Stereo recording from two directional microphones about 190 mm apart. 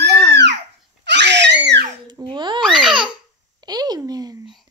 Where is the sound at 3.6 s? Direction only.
20° right (ahead or behind).